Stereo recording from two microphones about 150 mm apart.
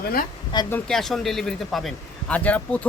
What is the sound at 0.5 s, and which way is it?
Speech, 30° left (ahead or behind).